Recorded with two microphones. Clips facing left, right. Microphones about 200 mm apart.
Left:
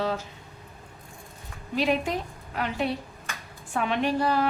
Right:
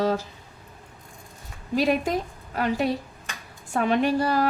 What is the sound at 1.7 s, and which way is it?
A woman's voice, 40° right (ahead or behind).